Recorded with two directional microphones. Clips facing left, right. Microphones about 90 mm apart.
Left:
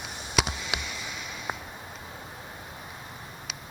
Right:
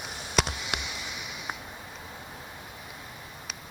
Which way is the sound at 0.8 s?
15° right (ahead or behind).